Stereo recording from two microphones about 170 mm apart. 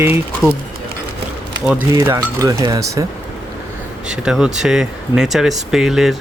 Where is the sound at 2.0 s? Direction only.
20° right (ahead or behind).